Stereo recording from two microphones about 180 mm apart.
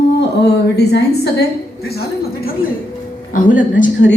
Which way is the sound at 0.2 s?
65° left (ahead or behind).